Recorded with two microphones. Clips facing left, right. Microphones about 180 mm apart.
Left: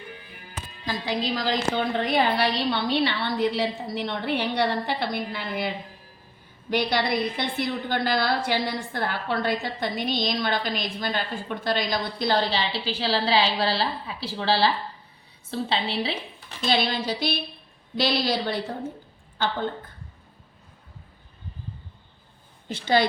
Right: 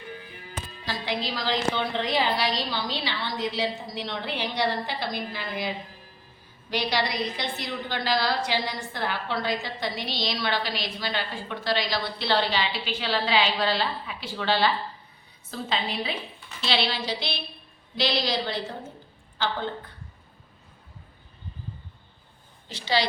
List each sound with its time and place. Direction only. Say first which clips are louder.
0.9 s a woman's voice: left 3 dB; 45° left (ahead or behind)
16.6 s a woman's voice: left 3 dB; 45° left (ahead or behind)
22.7 s a woman's voice: left 4 dB; 50° left (ahead or behind)